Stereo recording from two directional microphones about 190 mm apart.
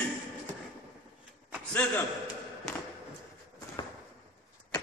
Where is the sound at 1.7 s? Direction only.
10° left (ahead or behind).